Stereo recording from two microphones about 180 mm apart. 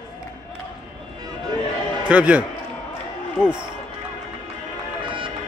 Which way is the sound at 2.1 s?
5° right (ahead or behind).